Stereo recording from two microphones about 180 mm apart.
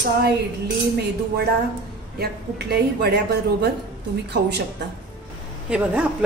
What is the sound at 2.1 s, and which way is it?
A woman's voice, 65° right (ahead or behind).